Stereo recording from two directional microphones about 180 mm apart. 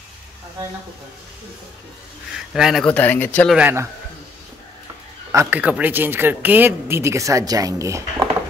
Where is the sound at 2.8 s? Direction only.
10° left (ahead or behind).